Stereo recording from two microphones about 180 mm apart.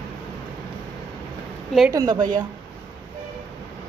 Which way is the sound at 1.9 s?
20° right (ahead or behind).